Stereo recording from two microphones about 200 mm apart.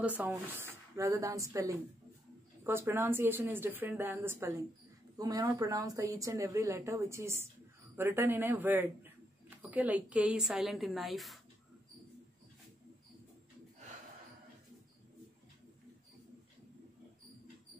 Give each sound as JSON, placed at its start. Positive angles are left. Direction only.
{"t": 0.0, "sound": "a woman's voice", "side_deg": -10}